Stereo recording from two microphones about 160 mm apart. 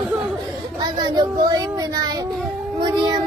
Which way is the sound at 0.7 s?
25° right (ahead or behind).